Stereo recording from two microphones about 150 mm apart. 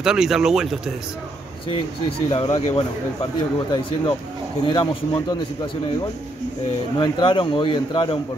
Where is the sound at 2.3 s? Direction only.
40° left (ahead or behind).